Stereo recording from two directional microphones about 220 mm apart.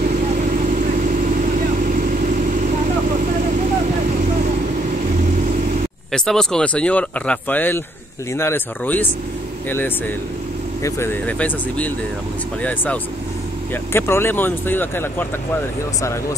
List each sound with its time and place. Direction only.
1.9 s vehicle: 35° right (ahead or behind)
6.1 s speech: centre (ahead or behind)
10.8 s speech: 10° left (ahead or behind)